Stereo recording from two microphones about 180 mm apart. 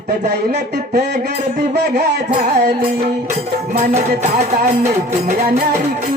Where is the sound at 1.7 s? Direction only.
65° right (ahead or behind).